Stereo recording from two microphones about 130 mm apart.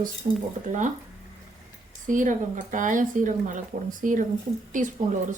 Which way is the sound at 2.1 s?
85° right.